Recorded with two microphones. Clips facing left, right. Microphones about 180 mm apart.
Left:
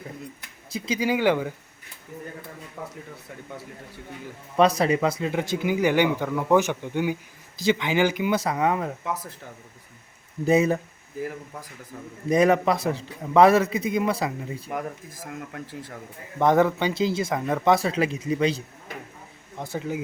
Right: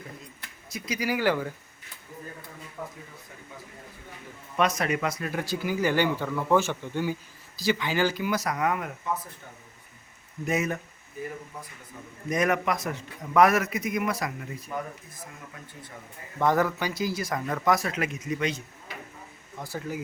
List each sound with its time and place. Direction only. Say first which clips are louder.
0.7 s speech: left 5 dB; 25° left (ahead or behind)
2.8 s a sound: left 1 dB; 90° left
4.5 s speech: left 6 dB; 30° left (ahead or behind)
10.4 s speech: left 8 dB; 30° left (ahead or behind)
12.3 s speech: left 6 dB; 30° left (ahead or behind)
14.7 s speech: left 2 dB; 85° left
16.4 s speech: left 5 dB; 20° left (ahead or behind)
19.5 s speech: left 4 dB; 20° left (ahead or behind)